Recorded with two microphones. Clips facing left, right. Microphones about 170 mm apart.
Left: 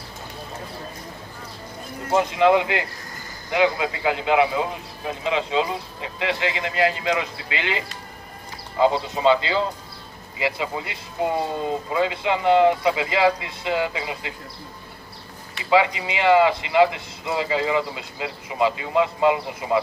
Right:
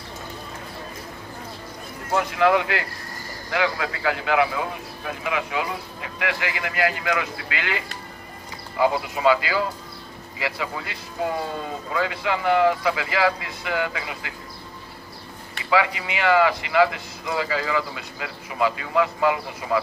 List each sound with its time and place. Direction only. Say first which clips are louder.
2.1 s a man's voice: left 2 dB; 20° left (ahead or behind)
15.7 s a man's voice: left 3 dB; 25° left (ahead or behind)